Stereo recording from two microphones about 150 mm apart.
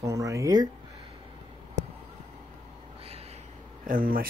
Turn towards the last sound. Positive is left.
turn(degrees=-70)  # may be behind; listen again after turning